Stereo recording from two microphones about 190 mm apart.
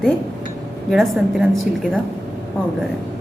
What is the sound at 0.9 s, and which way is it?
Speech, centre (ahead or behind).